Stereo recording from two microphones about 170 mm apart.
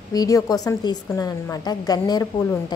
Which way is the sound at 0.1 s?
20° left (ahead or behind).